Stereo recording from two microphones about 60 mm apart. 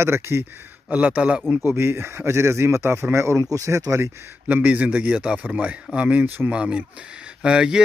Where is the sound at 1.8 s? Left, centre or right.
Right.